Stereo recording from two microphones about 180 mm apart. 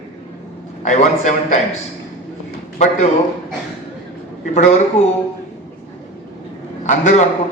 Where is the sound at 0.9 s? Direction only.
40° left (ahead or behind).